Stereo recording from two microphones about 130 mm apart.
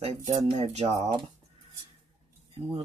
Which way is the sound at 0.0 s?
55° right (ahead or behind).